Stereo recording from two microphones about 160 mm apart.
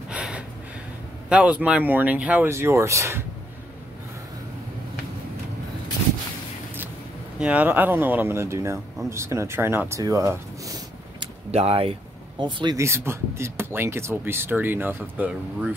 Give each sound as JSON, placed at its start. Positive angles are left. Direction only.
{"t": 0.1, "sound": "gasp", "side_deg": -5}
{"t": 1.3, "sound": "speech", "side_deg": -10}
{"t": 7.3, "sound": "speech", "side_deg": -10}
{"t": 11.5, "sound": "speech", "side_deg": -35}
{"t": 12.7, "sound": "speech", "side_deg": -15}